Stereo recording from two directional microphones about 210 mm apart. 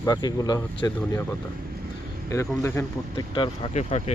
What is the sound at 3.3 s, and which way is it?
Speech, 25° left (ahead or behind).